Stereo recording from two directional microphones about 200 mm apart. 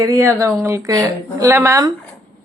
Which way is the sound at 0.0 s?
15° right (ahead or behind).